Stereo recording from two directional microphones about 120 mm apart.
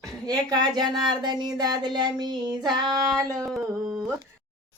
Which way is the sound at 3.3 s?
Centre (ahead or behind).